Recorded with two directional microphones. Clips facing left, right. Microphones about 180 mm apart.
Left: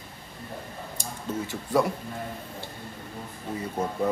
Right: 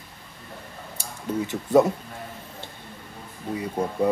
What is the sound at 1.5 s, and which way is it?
Speech, 20° right (ahead or behind).